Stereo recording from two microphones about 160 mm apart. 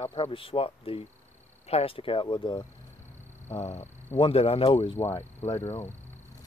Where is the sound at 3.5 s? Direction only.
45° left (ahead or behind).